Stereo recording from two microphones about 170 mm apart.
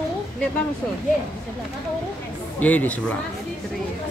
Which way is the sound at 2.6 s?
10° left (ahead or behind).